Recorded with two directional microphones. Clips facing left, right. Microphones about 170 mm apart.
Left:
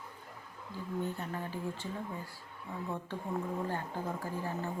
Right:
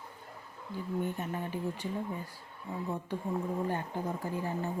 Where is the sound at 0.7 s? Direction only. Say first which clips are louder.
Right 3 dB; 15° right (ahead or behind).